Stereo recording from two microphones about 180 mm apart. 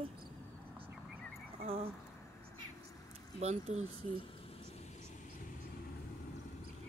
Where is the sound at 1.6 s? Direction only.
35° right (ahead or behind).